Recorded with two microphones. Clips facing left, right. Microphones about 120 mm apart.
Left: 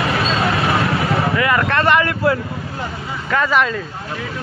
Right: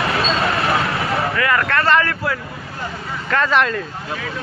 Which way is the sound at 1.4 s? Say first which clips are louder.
Left 2 dB; 20° left (ahead or behind).